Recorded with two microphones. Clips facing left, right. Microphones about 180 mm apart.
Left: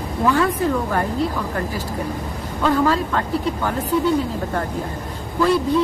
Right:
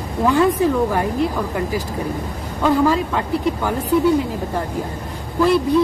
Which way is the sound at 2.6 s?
15° right (ahead or behind).